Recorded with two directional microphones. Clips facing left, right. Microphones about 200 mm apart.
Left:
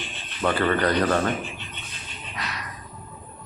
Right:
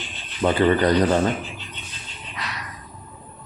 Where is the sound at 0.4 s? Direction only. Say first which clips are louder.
Right 4 dB; 15° right (ahead or behind).